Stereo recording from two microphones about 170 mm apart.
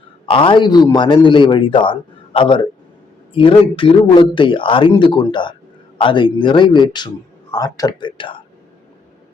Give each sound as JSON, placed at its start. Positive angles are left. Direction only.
{"t": 0.3, "sound": "a man's voice", "side_deg": 30}